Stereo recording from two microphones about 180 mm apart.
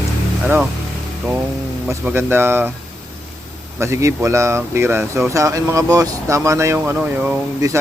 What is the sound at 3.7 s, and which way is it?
Speech, 15° right (ahead or behind).